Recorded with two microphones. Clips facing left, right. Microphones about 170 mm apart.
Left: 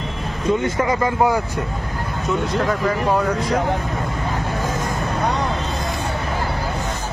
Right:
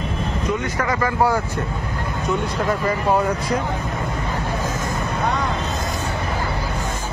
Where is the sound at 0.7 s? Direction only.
20° left (ahead or behind).